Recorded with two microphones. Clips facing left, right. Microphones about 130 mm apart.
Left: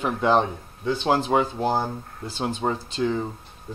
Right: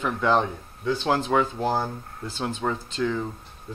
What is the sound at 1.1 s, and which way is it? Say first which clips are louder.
Speech: left 2 dB; 30° left (ahead or behind).